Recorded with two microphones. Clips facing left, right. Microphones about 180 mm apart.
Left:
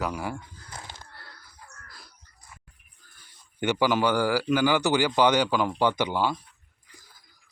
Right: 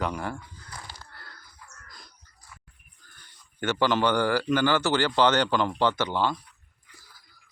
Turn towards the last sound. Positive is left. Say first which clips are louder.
# left 1 dB
turn(degrees=10)  # may be behind; listen again after turning